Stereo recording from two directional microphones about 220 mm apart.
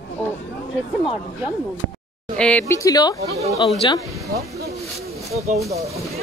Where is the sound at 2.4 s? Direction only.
5° left (ahead or behind); by 4.0 s 20° left (ahead or behind).